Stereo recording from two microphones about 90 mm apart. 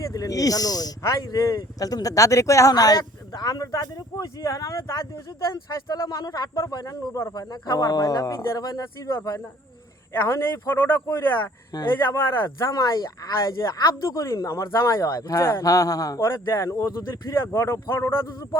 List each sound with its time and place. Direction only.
0.0 s speech: 40° left (ahead or behind)
7.3 s speech: 50° left (ahead or behind)
10.1 s a man's voice: 30° left (ahead or behind)
12.7 s speech: 45° left (ahead or behind)
16.2 s speech: 30° left (ahead or behind)
17.4 s a man's voice: 30° left (ahead or behind)